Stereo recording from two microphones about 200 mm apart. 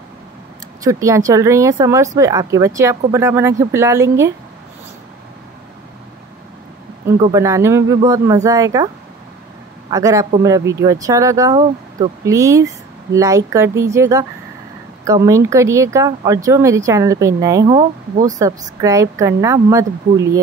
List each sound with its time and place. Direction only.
0.8 s speech: 15° right (ahead or behind)
7.2 s a man's voice: 20° right (ahead or behind)